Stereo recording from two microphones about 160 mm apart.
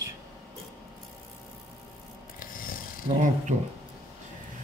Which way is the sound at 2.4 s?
60° left (ahead or behind).